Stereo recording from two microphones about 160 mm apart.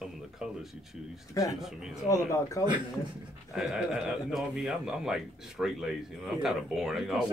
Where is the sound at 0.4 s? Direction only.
5° right (ahead or behind).